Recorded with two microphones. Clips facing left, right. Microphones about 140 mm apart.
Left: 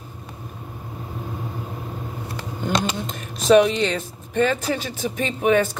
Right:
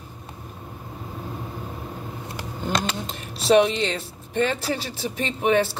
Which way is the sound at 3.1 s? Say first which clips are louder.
Left 3 dB; 30° right (ahead or behind).